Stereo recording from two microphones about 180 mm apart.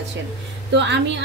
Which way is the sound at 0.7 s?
75° right (ahead or behind).